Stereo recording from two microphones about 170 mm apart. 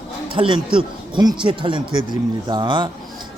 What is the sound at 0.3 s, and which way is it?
A man's voice, 30° right (ahead or behind).